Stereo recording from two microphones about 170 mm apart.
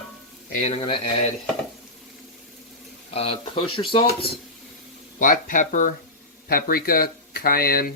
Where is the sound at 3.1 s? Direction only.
35° left (ahead or behind).